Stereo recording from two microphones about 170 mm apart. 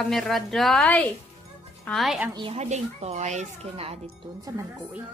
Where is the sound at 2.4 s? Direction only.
35° right (ahead or behind).